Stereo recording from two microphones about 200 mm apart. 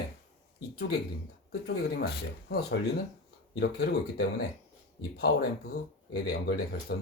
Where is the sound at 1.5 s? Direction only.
55° left (ahead or behind).